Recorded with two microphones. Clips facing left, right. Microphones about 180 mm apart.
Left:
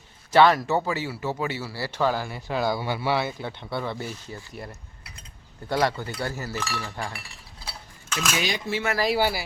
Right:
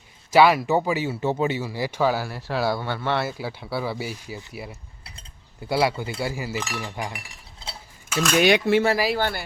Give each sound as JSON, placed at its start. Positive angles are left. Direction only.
{"t": 0.3, "sound": "speech", "side_deg": -10}
{"t": 2.8, "sound": "speech", "side_deg": 10}
{"t": 3.2, "sound": "speech", "side_deg": -5}
{"t": 8.4, "sound": "speech", "side_deg": -65}
{"t": 9.1, "sound": "speech", "side_deg": 10}